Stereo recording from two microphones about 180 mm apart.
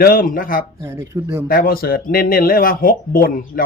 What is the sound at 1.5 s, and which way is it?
Speech, 55° left (ahead or behind).